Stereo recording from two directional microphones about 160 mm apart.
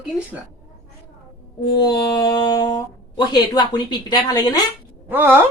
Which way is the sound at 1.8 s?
25° left (ahead or behind).